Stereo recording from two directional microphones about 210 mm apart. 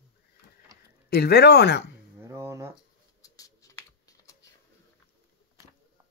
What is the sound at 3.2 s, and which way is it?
Computer keyboard, 15° left (ahead or behind).